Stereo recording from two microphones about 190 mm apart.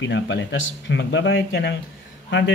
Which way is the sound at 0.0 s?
70° left (ahead or behind).